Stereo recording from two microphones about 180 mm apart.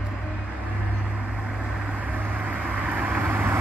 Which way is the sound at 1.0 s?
5° right (ahead or behind).